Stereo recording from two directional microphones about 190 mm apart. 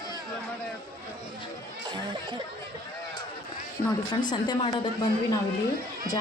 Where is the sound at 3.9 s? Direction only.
20° left (ahead or behind).